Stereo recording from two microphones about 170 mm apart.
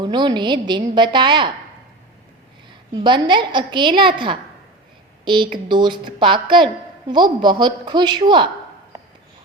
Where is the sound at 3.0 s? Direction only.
30° right (ahead or behind).